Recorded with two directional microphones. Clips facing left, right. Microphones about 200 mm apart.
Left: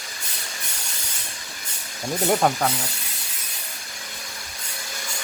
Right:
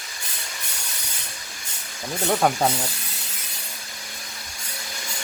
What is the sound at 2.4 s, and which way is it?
Speech, 5° right (ahead or behind).